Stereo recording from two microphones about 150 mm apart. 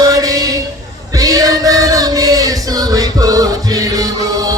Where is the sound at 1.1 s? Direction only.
25° right (ahead or behind).